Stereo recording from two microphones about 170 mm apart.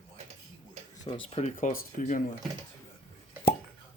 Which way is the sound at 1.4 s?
45° left (ahead or behind).